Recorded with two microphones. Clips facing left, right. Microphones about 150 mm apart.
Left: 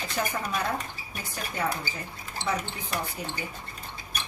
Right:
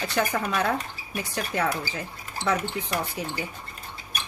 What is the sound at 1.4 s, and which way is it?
Speech, 90° right.